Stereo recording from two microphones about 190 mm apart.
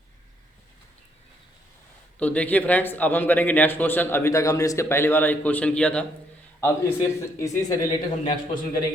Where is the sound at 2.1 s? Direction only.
5° left (ahead or behind).